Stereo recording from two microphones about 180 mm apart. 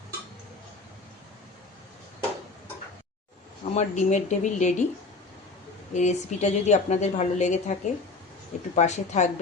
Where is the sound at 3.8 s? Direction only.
40° left (ahead or behind).